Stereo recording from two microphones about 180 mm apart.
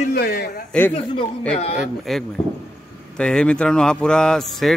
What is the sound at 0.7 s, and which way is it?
Speech, 5° left (ahead or behind).